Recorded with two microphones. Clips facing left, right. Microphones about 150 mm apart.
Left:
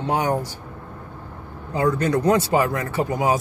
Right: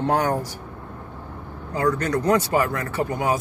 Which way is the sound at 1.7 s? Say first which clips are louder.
Left 2 dB; 25° left (ahead or behind).